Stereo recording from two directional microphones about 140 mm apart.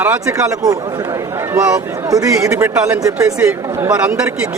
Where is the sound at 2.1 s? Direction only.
25° right (ahead or behind).